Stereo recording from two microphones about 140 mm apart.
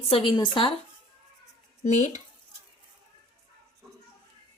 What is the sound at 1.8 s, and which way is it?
Speech, 55° left (ahead or behind).